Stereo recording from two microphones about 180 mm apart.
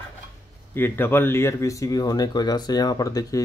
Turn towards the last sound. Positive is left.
turn(degrees=20)  # may be behind; listen again after turning